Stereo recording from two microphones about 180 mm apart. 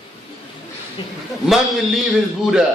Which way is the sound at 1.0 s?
25° left (ahead or behind).